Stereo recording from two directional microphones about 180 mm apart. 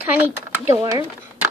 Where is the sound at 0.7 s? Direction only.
20° right (ahead or behind).